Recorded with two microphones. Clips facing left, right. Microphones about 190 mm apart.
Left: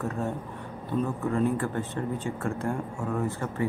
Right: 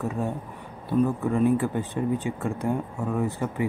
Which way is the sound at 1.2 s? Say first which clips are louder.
Right 4 dB; 15° right (ahead or behind).